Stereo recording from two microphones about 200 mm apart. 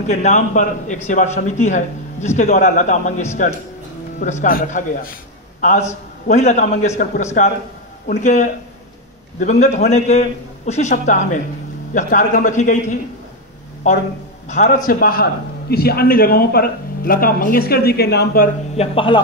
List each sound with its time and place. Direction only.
0.0 s a man's voice: 35° left (ahead or behind)
8.2 s a man's voice: 35° left (ahead or behind)
13.9 s a man's voice: 35° left (ahead or behind)
18.8 s speech: 25° left (ahead or behind)